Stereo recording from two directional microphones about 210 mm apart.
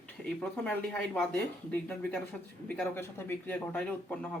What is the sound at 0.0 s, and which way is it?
Speech, 5° left (ahead or behind).